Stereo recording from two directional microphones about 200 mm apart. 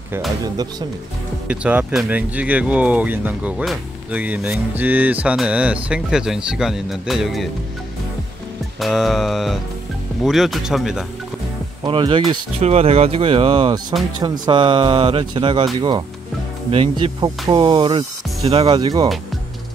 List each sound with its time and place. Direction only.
1.5 s speech: 5° right (ahead or behind)
8.7 s music: centre (ahead or behind)
11.8 s speech: 25° right (ahead or behind)